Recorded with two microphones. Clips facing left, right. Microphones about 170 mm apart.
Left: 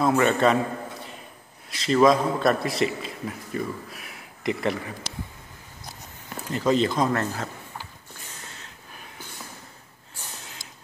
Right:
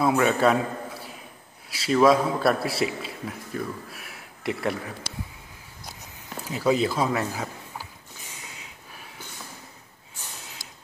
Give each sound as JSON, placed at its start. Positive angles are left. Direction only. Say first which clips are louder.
{"t": 0.0, "sound": "a man's voice", "louder": "left 1 dB", "side_deg": -5}
{"t": 6.5, "sound": "speech", "louder": "left 1 dB", "side_deg": -5}
{"t": 8.5, "sound": "a sound", "louder": "even", "side_deg": -10}